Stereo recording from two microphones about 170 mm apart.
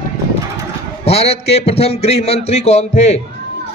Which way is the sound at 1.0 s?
35° left (ahead or behind).